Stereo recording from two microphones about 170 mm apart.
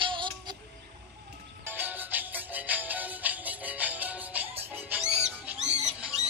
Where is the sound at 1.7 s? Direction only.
10° right (ahead or behind).